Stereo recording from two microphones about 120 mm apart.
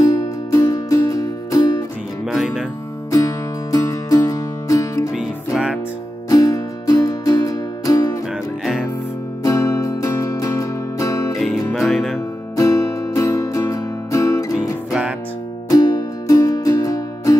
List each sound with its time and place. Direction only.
0.0 s music: 25° left (ahead or behind)
2.2 s music: 5° right (ahead or behind)
3.1 s music: 30° left (ahead or behind)
5.1 s music: 10° right (ahead or behind)
6.2 s music: 30° left (ahead or behind)
9.4 s music: 25° left (ahead or behind)
11.3 s music: centre (ahead or behind)
12.5 s music: 30° left (ahead or behind)
14.9 s music: 10° right (ahead or behind)
15.7 s music: 30° left (ahead or behind)